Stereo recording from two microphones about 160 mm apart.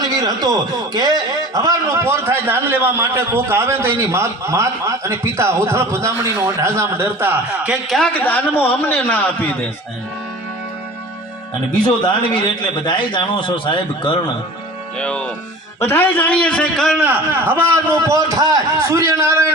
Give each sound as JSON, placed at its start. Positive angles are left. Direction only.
{"t": 0.1, "sound": "a man's voice", "side_deg": -25}
{"t": 11.9, "sound": "a man's voice", "side_deg": 30}
{"t": 14.9, "sound": "a man's voice", "side_deg": 5}
{"t": 17.0, "sound": "a man's voice", "side_deg": -15}